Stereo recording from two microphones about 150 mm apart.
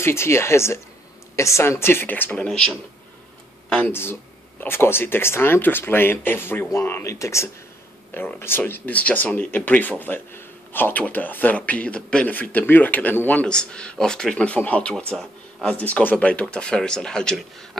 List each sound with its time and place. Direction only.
0.0 s speech: 15° left (ahead or behind)